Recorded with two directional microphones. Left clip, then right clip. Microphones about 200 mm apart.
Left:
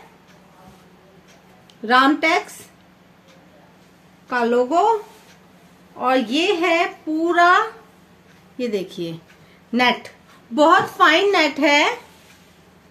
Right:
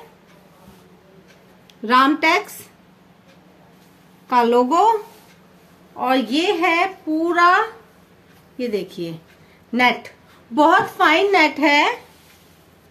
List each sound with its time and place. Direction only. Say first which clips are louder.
1.9 s a woman's voice: right 1 dB; 25° right (ahead or behind)
4.3 s a woman's voice: right 3 dB; 45° right (ahead or behind)
5.9 s a woman's voice: even; 20° right (ahead or behind); by 12.0 s centre (ahead or behind)